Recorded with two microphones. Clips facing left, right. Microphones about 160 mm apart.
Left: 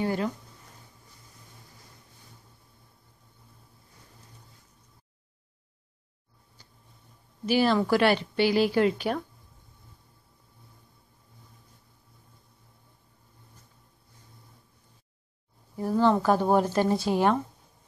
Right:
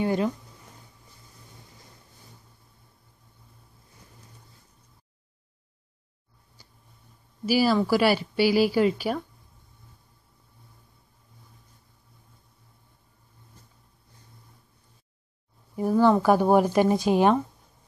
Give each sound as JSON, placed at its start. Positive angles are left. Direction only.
{"t": 0.0, "sound": "speech", "side_deg": -20}
{"t": 7.4, "sound": "speech", "side_deg": -5}
{"t": 15.7, "sound": "speech", "side_deg": -15}